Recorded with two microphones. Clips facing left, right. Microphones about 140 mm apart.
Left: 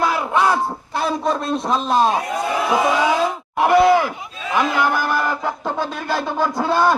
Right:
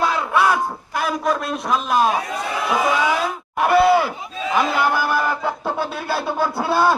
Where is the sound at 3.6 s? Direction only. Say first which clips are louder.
Left 1 dB; 20° left (ahead or behind).